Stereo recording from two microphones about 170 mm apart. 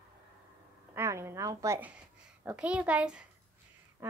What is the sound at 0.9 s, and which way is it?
Speech, 15° right (ahead or behind).